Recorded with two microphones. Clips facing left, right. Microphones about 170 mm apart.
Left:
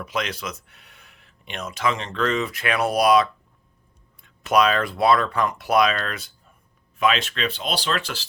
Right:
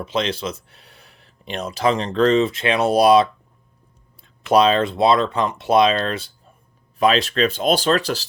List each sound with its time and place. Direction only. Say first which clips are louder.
0.0 s speech: right 5 dB; 30° right (ahead or behind)